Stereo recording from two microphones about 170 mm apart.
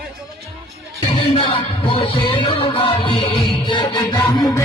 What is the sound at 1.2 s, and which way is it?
Music, 30° left (ahead or behind).